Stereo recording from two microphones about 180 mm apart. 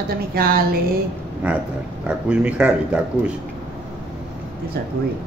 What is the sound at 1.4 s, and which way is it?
A man's voice, 5° right (ahead or behind).